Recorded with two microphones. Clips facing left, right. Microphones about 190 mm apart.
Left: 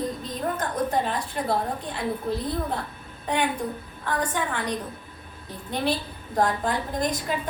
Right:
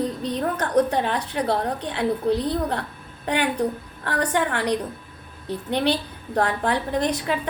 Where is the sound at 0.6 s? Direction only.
70° right (ahead or behind).